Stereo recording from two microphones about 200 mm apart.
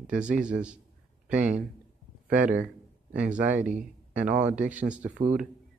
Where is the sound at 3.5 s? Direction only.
40° right (ahead or behind).